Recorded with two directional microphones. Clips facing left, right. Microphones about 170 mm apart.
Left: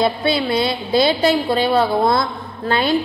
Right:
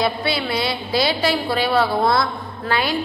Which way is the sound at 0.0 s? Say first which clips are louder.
Left 4 dB; 25° left (ahead or behind).